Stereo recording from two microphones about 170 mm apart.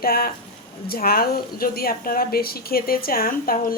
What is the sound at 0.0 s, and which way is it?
A woman's voice, 60° left (ahead or behind).